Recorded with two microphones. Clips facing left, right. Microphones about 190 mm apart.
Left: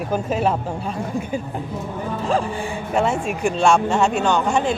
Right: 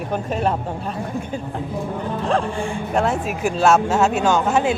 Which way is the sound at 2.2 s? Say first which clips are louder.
Even; centre (ahead or behind).